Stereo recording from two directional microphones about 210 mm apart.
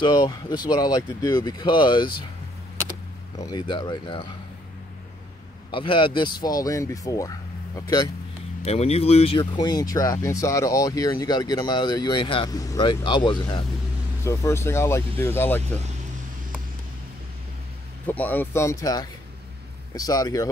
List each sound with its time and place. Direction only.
0.0 s speech: 20° left (ahead or behind)
3.4 s speech: 20° left (ahead or behind)
5.7 s speech: 25° left (ahead or behind)
8.6 s speech: 30° left (ahead or behind); by 15.6 s 10° left (ahead or behind)
18.0 s speech: 10° left (ahead or behind)